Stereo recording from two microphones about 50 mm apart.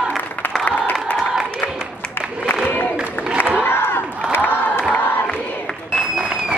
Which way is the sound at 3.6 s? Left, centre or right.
Left.